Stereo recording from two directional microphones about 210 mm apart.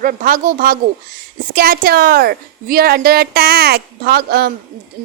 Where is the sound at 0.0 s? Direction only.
40° right (ahead or behind).